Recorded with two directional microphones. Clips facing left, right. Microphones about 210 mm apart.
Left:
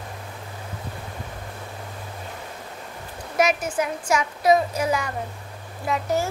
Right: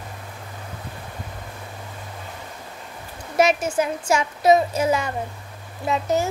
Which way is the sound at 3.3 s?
25° right (ahead or behind).